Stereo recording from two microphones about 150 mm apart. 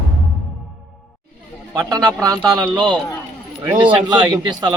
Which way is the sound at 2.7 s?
30° right (ahead or behind).